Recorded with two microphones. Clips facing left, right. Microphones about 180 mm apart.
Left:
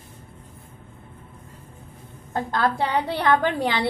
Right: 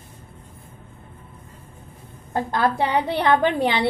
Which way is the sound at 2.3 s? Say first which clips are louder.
Right 2 dB; 25° right (ahead or behind).